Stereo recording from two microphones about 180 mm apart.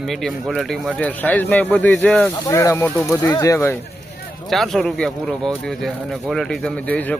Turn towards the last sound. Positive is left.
turn(degrees=10)  # may be behind; listen again after turning